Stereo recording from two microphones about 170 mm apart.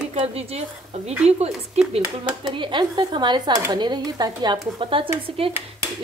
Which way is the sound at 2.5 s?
30° right (ahead or behind).